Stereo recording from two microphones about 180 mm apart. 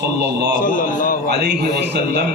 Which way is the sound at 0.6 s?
50° left (ahead or behind).